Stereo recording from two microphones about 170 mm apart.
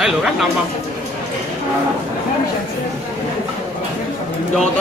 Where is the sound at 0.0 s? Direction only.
Centre (ahead or behind).